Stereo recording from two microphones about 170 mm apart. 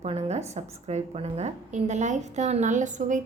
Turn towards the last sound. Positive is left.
turn(degrees=-45)  # may be behind; listen again after turning